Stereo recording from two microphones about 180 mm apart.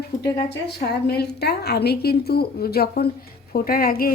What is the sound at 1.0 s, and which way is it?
A woman's voice, 65° left (ahead or behind).